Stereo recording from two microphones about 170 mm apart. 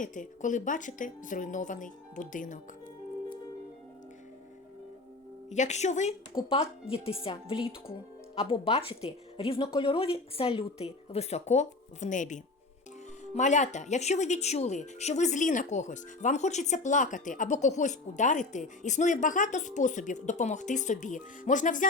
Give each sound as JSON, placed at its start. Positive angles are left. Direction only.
{"t": 0.0, "sound": "speech", "side_deg": 50}
{"t": 5.5, "sound": "speech", "side_deg": 45}
{"t": 6.3, "sound": "a woman's voice", "side_deg": 25}
{"t": 6.9, "sound": "speech", "side_deg": 35}